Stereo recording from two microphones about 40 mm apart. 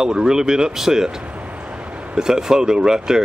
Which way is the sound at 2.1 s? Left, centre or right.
Centre.